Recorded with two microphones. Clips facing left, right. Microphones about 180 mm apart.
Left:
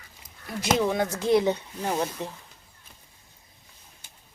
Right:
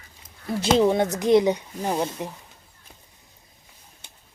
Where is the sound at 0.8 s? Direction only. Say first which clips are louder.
Right 5 dB; 25° right (ahead or behind).